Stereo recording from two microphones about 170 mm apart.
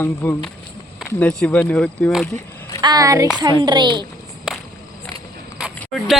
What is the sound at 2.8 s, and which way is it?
Clapping, 20° right (ahead or behind).